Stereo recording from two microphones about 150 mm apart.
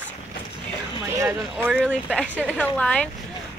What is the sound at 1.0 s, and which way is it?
A woman's voice, 15° right (ahead or behind).